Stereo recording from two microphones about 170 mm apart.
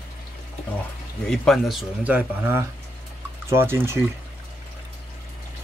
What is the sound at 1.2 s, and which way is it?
Speech, 5° left (ahead or behind).